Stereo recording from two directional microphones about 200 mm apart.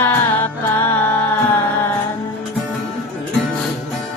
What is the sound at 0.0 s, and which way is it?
Music, 10° left (ahead or behind).